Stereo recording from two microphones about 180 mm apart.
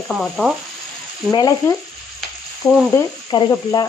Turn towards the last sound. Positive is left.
turn(degrees=20)  # may be behind; listen again after turning